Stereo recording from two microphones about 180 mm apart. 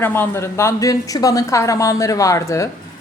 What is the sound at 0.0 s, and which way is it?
A woman's voice, 10° left (ahead or behind).